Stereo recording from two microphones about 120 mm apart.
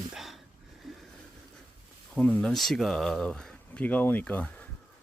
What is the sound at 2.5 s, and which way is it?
Speech, centre (ahead or behind).